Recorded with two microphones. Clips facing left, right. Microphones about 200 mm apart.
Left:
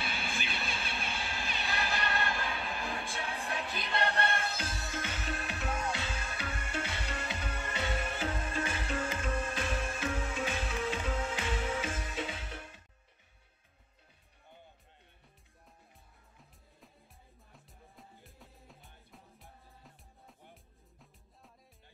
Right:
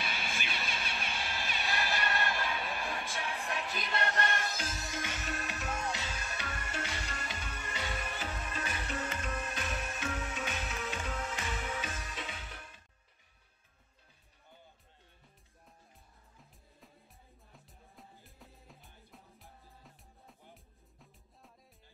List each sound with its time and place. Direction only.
0.0 s music: 35° left (ahead or behind)
7.8 s music: 25° left (ahead or behind)
17.6 s music: centre (ahead or behind)